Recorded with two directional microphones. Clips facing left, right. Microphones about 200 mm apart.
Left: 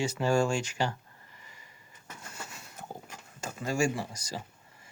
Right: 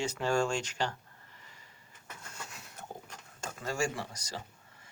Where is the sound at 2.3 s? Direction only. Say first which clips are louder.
Left 3 dB; centre (ahead or behind).